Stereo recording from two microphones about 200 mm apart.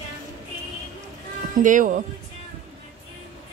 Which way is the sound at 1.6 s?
40° right (ahead or behind).